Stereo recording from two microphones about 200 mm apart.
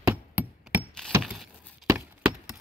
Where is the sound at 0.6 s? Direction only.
5° right (ahead or behind).